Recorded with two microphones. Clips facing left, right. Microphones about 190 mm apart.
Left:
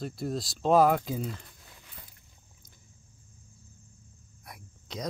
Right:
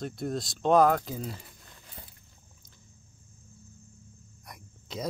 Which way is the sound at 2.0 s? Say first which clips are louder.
Right 5 dB; 35° right (ahead or behind).